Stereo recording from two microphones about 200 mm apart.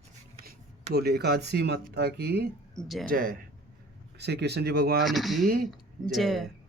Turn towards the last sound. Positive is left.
turn(degrees=0)  # may be behind; listen again after turning